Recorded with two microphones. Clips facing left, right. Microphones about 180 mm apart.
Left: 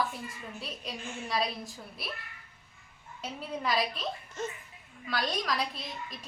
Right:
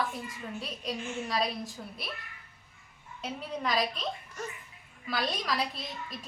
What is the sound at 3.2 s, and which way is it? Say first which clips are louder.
Speech: right 1 dB; centre (ahead or behind).